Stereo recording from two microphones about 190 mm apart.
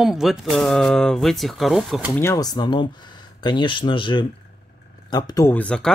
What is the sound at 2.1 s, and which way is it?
Speech, 15° left (ahead or behind).